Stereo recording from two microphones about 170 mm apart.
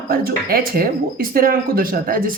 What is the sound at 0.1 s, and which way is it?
Speech, 60° right (ahead or behind).